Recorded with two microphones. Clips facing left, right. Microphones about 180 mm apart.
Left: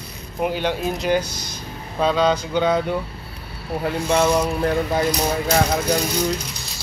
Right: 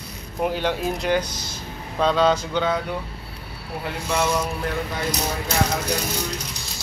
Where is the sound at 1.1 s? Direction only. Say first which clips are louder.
Left 3 dB; 10° left (ahead or behind).